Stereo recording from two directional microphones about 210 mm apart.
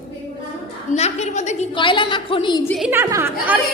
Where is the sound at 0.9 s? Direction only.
30° left (ahead or behind).